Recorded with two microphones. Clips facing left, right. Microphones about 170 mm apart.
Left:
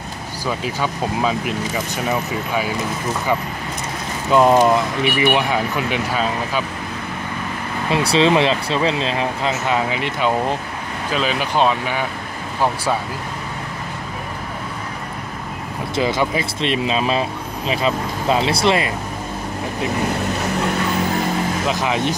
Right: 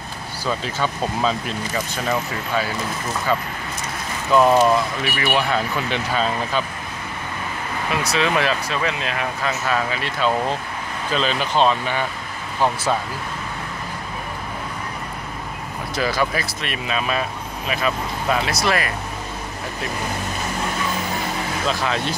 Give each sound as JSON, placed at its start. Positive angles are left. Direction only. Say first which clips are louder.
{"t": 0.5, "sound": "speech", "louder": "left 1 dB", "side_deg": 10}
{"t": 4.3, "sound": "speech", "louder": "left 2 dB", "side_deg": 20}
{"t": 7.9, "sound": "speech", "louder": "left 6 dB", "side_deg": 30}
{"t": 11.1, "sound": "speech", "louder": "left 1 dB", "side_deg": 10}
{"t": 15.9, "sound": "speech", "louder": "left 3 dB", "side_deg": 20}
{"t": 21.6, "sound": "speech", "louder": "left 1 dB", "side_deg": 15}